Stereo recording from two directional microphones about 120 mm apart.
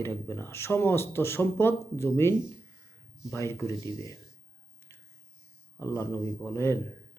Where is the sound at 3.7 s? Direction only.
35° right (ahead or behind).